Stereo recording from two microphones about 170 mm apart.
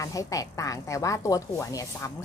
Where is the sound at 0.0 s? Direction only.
20° left (ahead or behind).